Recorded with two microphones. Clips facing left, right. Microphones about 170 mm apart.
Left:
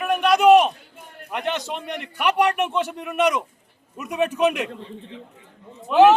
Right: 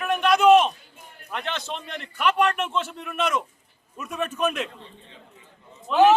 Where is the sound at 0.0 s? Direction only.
10° left (ahead or behind).